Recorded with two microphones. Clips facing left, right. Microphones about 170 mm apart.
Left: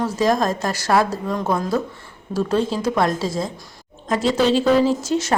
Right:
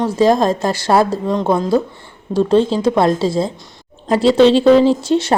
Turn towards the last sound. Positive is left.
turn(degrees=-30)  # may be behind; listen again after turning